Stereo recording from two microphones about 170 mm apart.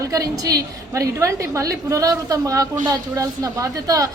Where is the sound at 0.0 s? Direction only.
20° right (ahead or behind).